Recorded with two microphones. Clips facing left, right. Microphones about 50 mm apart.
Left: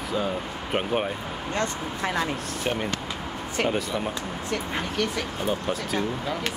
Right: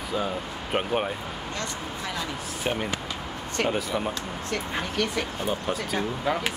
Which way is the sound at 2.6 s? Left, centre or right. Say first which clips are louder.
Even; centre.